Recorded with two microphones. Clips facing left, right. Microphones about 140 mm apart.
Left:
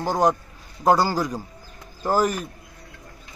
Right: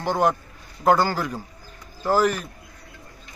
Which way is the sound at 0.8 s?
10° left (ahead or behind).